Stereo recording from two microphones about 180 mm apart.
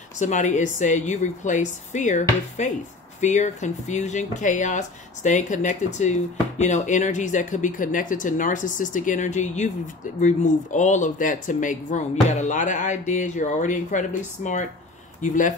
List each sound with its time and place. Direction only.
0.2 s speech: 40° left (ahead or behind)